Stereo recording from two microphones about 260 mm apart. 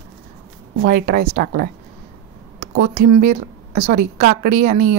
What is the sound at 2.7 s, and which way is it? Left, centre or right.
A woman's voice, right.